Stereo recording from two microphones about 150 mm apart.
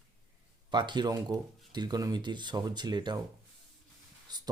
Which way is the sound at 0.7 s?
30° right (ahead or behind).